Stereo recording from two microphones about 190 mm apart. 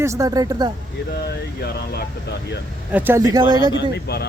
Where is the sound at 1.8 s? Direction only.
55° left (ahead or behind).